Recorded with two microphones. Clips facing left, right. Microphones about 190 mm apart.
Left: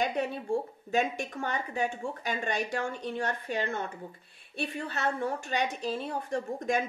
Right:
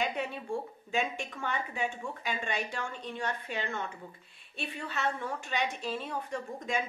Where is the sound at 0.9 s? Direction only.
40° left (ahead or behind).